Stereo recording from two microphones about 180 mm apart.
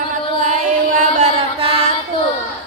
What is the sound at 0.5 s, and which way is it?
Chant, 40° right (ahead or behind).